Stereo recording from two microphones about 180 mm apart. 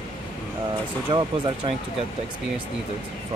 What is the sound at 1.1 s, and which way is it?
Speech, 25° right (ahead or behind).